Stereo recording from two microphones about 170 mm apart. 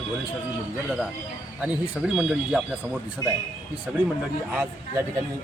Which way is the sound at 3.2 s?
20° left (ahead or behind).